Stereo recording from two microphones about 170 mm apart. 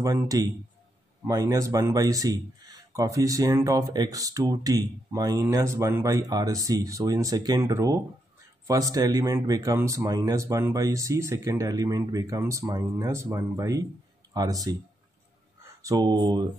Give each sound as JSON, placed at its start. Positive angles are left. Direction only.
{"t": 0.0, "sound": "speech", "side_deg": -20}
{"t": 15.8, "sound": "speech", "side_deg": -20}